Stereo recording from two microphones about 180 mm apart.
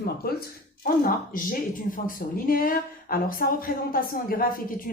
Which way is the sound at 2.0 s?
55° left (ahead or behind).